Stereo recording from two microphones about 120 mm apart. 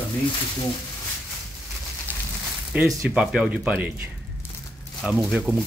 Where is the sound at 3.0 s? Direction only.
Centre (ahead or behind).